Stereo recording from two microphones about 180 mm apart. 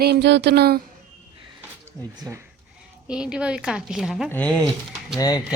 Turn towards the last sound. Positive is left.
turn(degrees=20)  # may be behind; listen again after turning